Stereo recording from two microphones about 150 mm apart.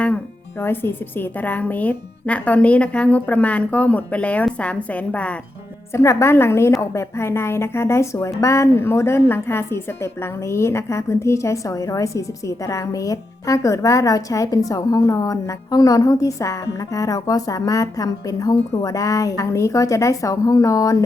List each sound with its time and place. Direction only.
0.6 s speech: 15° left (ahead or behind)
5.9 s a woman's voice: 20° left (ahead or behind)